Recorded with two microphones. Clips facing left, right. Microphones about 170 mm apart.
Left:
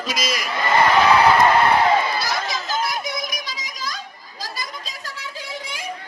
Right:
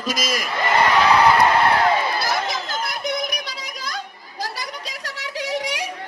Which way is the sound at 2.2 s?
55° right (ahead or behind).